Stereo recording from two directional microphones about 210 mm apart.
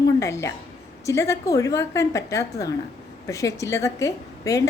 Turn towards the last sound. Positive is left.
turn(degrees=15)  # may be behind; listen again after turning